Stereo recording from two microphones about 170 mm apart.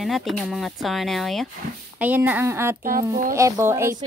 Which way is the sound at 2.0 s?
10° right (ahead or behind).